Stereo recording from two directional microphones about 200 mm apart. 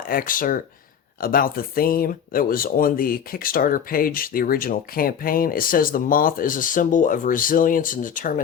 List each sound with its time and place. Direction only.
0.0 s speech: 45° left (ahead or behind)